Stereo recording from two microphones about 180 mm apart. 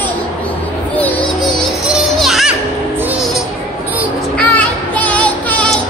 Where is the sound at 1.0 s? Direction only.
10° left (ahead or behind).